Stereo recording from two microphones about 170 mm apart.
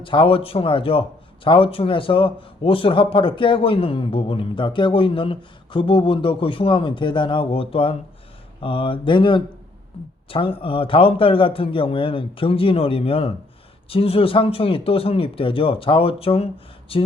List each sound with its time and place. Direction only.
0.0 s a man's voice: 30° left (ahead or behind)
8.6 s a sound: 30° left (ahead or behind)
10.2 s a man's voice: 35° left (ahead or behind)